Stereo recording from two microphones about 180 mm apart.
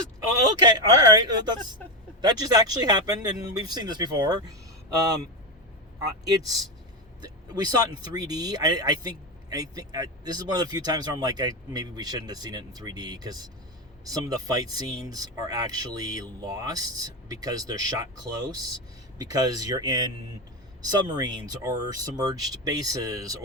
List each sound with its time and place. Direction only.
0.6 s speech: 25° right (ahead or behind)